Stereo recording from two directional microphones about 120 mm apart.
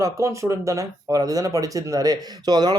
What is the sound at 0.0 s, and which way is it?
Speech, 25° right (ahead or behind).